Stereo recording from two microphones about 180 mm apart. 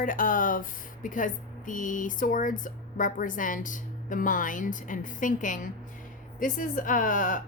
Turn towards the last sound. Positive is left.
turn(degrees=45)  # may be behind; listen again after turning